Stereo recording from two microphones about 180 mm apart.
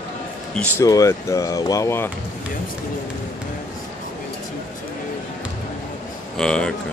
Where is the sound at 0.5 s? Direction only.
10° left (ahead or behind).